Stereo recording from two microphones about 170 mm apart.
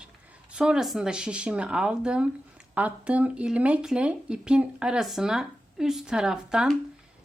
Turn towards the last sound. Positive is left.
turn(degrees=-5)  # may be behind; listen again after turning